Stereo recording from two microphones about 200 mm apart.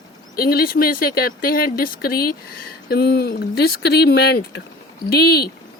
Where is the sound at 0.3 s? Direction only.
50° left (ahead or behind).